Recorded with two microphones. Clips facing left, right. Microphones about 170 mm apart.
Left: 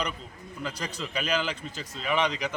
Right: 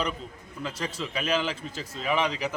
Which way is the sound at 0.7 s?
25° right (ahead or behind).